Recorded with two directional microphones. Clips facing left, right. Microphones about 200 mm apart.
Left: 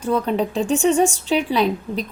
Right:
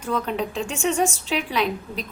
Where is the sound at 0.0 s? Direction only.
35° left (ahead or behind).